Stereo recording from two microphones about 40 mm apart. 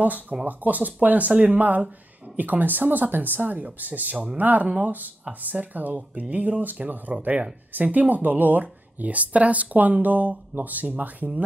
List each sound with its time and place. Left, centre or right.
0.0 s speech: right
3.3 s speech: right
4.6 s speech: right